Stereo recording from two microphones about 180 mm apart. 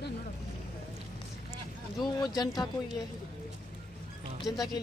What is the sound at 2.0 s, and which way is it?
Speech, 20° left (ahead or behind).